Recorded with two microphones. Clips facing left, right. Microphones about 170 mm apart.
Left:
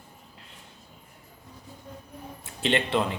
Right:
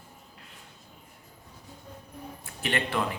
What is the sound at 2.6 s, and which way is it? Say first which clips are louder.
Speech: left 4 dB; 25° left (ahead or behind).